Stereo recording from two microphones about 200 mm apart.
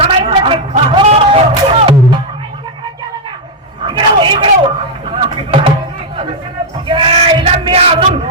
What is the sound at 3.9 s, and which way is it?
Speech, 25° right (ahead or behind).